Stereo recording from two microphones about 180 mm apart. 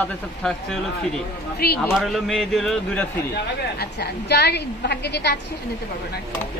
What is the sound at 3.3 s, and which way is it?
A woman's voice, 65° left (ahead or behind).